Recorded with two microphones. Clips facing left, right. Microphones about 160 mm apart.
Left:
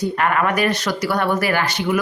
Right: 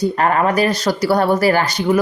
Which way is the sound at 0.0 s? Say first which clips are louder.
Right 3 dB; 35° right (ahead or behind).